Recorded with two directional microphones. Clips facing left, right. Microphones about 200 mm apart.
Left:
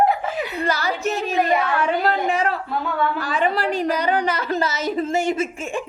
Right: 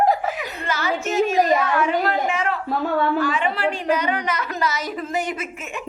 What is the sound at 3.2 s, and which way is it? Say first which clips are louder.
A woman's voice: even; 35° left (ahead or behind).